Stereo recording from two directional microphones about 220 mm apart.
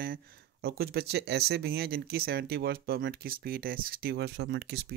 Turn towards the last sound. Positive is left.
turn(degrees=-50)  # may be behind; listen again after turning